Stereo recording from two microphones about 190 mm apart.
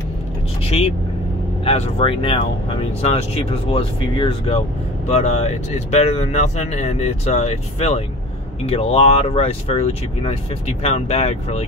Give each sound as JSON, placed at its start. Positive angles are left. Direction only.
{"t": 0.7, "sound": "speech", "side_deg": 30}